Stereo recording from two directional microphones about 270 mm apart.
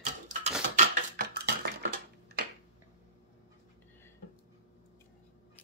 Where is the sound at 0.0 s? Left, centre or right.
Right.